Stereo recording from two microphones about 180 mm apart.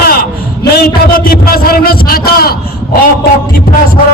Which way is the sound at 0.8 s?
55° left (ahead or behind).